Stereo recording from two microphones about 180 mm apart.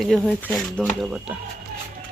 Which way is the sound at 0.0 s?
Centre (ahead or behind).